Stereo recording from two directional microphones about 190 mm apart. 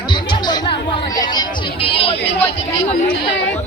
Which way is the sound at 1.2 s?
25° left (ahead or behind).